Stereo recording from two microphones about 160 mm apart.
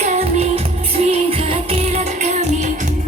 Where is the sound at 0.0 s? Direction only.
45° right (ahead or behind).